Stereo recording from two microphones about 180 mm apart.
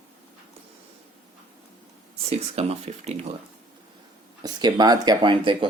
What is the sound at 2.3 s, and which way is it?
Speech, 35° right (ahead or behind).